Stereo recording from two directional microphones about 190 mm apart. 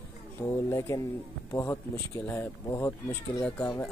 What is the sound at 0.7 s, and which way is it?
Speech, 15° left (ahead or behind).